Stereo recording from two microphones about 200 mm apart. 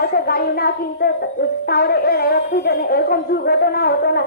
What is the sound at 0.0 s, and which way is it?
A child's voice, 50° left (ahead or behind).